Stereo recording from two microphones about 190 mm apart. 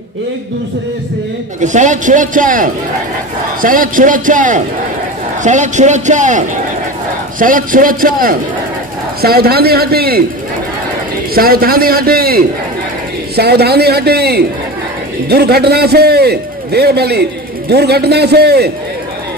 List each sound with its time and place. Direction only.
1.6 s a man's voice: 40° right (ahead or behind)
11.3 s a man's voice: 50° right (ahead or behind)